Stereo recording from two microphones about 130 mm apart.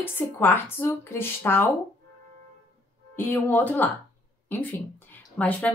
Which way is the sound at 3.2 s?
15° left (ahead or behind).